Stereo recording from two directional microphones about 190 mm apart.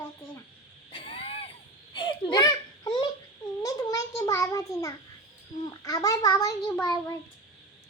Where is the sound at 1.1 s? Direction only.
30° left (ahead or behind).